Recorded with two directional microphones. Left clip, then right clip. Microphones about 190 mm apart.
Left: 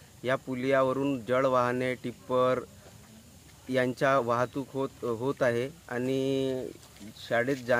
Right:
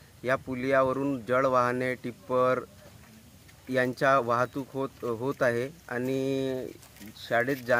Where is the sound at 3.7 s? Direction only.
5° left (ahead or behind).